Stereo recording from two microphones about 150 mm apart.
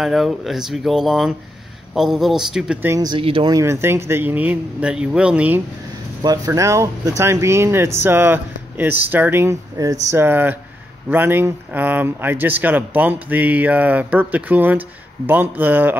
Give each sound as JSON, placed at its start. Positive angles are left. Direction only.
{"t": 0.0, "sound": "speech", "side_deg": 0}
{"t": 2.9, "sound": "speech", "side_deg": -25}
{"t": 3.2, "sound": "speech", "side_deg": -35}
{"t": 3.5, "sound": "speech", "side_deg": -20}
{"t": 6.2, "sound": "speech", "side_deg": -25}